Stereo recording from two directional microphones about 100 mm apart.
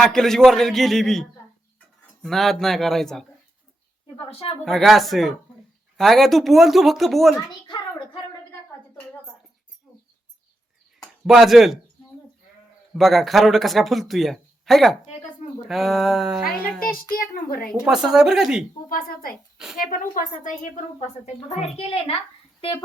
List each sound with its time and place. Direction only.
0.0 s speech: 5° left (ahead or behind)
4.3 s a woman's voice: 75° left (ahead or behind)
4.6 s speech: centre (ahead or behind)
7.7 s a sound: 50° left (ahead or behind)
11.3 s speech: centre (ahead or behind)
13.0 s speech: centre (ahead or behind)
17.8 s speech: 5° right (ahead or behind)
21.6 s a child's voice: 85° left